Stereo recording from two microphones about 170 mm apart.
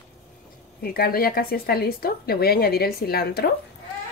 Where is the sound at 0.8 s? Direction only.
60° left (ahead or behind).